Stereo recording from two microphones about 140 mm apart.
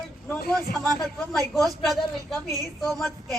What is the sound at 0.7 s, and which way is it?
Speech, 90° left.